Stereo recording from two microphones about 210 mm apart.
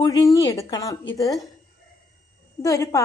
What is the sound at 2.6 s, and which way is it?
Speech, 15° left (ahead or behind).